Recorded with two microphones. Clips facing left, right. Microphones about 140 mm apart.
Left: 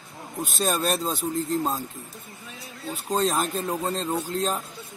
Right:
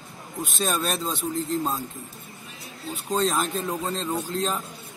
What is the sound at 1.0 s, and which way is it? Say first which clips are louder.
A man's voice: left 1 dB; centre (ahead or behind).